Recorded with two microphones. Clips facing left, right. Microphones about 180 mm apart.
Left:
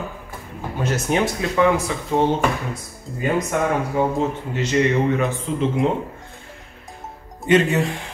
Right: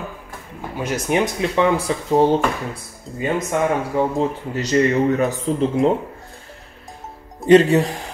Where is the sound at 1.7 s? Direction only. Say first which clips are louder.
Right 3 dB; 35° right (ahead or behind).